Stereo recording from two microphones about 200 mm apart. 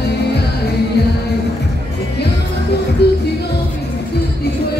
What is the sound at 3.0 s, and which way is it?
Music, 55° left (ahead or behind).